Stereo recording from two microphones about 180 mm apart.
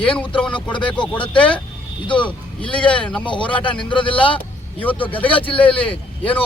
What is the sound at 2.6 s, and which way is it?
Speech, 5° left (ahead or behind).